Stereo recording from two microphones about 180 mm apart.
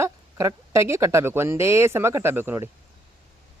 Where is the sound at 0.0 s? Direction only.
15° right (ahead or behind).